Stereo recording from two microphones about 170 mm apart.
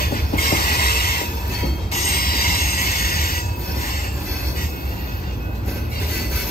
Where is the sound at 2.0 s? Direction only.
60° left (ahead or behind).